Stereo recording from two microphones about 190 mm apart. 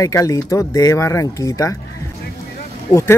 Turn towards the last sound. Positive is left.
turn(degrees=15)  # may be behind; listen again after turning